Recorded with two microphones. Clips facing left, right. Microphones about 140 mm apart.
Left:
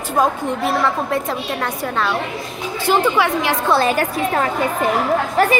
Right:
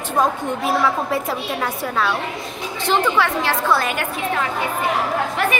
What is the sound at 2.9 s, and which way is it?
Speech, 15° left (ahead or behind).